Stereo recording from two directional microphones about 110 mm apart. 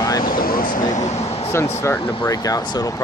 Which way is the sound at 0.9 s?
85° left.